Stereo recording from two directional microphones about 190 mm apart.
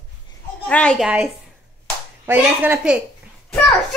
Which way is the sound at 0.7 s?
5° left (ahead or behind).